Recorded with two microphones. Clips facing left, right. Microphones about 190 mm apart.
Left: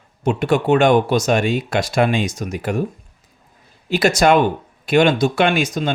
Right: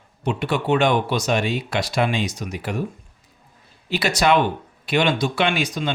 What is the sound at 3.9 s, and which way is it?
Speech, 45° left (ahead or behind).